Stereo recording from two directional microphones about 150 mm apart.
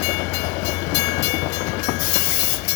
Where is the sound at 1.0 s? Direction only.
30° left (ahead or behind).